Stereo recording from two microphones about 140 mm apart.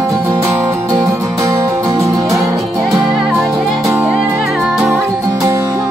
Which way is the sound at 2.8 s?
5° right (ahead or behind).